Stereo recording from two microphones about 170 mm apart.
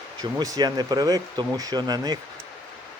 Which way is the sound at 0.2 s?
25° right (ahead or behind).